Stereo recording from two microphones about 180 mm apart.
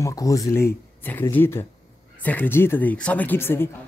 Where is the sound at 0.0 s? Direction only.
20° left (ahead or behind).